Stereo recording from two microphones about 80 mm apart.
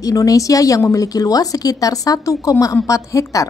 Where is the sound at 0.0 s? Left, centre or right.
Left.